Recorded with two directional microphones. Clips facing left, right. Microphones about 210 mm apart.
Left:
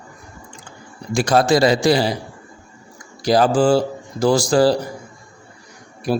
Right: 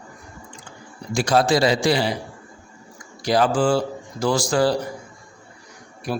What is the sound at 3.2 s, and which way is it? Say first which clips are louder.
A man's voice: left 4 dB; 35° left (ahead or behind).